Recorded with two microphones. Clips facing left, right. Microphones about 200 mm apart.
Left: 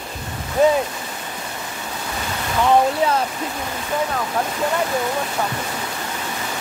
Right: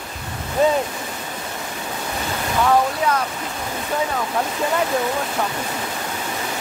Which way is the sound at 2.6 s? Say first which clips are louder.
Left 3 dB; 30° left (ahead or behind).